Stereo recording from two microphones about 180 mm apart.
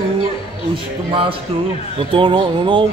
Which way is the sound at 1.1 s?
30° right (ahead or behind).